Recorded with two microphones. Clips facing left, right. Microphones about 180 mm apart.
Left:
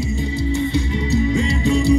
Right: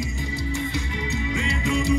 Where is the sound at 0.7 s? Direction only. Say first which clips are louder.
Left 9 dB; 35° left (ahead or behind).